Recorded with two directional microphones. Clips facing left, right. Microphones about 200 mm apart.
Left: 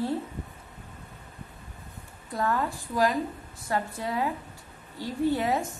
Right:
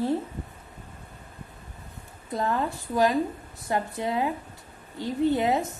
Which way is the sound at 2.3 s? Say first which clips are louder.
Right 1 dB; 20° right (ahead or behind).